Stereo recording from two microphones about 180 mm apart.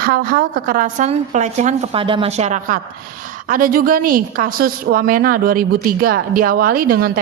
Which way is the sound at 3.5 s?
50° right (ahead or behind).